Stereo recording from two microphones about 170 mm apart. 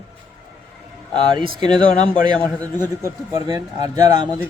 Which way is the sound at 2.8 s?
20° right (ahead or behind).